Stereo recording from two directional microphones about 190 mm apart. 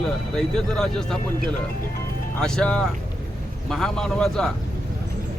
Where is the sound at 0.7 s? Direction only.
Centre (ahead or behind).